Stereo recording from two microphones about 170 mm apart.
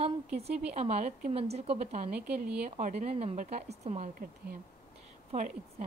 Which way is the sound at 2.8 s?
45° right (ahead or behind).